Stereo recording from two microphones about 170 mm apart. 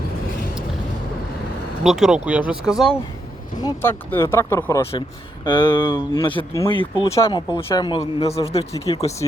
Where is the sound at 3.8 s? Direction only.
15° left (ahead or behind).